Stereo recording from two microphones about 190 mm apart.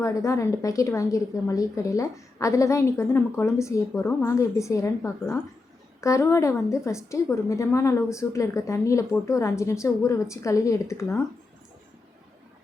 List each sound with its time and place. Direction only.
0.0 s a woman's voice: 15° left (ahead or behind)